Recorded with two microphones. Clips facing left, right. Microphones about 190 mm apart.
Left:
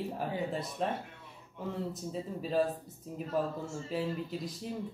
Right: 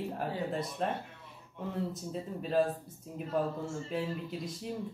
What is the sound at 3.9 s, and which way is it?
Speech, centre (ahead or behind).